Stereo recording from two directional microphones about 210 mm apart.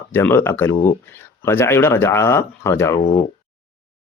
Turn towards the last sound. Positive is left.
turn(degrees=20)  # may be behind; listen again after turning